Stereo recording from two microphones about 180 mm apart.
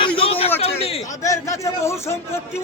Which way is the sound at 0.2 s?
30° left (ahead or behind).